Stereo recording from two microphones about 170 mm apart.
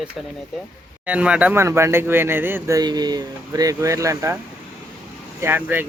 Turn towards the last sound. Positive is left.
turn(degrees=-10)  # may be behind; listen again after turning